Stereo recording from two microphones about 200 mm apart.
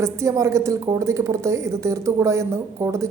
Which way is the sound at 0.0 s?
15° right (ahead or behind).